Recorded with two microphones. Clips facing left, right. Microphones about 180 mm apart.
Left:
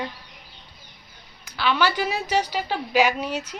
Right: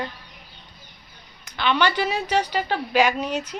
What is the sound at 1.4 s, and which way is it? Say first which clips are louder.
A woman's voice: right 1 dB; 5° left (ahead or behind).